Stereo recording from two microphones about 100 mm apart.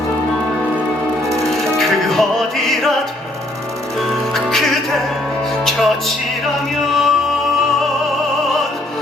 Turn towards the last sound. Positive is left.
turn(degrees=0)  # may be behind; listen again after turning